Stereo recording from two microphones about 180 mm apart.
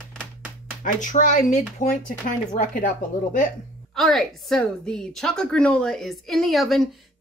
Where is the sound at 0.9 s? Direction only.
45° left (ahead or behind).